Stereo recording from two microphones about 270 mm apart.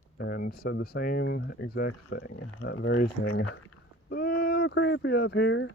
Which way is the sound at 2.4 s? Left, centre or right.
Left.